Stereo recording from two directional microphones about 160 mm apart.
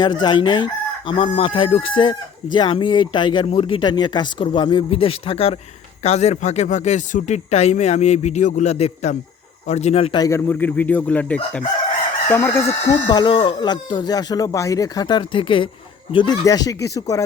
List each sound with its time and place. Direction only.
0.0 s chicken: 25° left (ahead or behind)
6.0 s speech: 40° left (ahead or behind)
9.6 s chicken: 45° left (ahead or behind)
10.2 s speech: 20° left (ahead or behind)
12.9 s speech: 25° left (ahead or behind)